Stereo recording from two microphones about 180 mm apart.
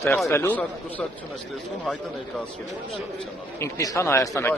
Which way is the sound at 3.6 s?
15° left (ahead or behind).